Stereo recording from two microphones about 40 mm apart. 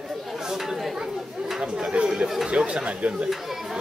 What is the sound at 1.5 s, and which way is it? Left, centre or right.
Chatter, right.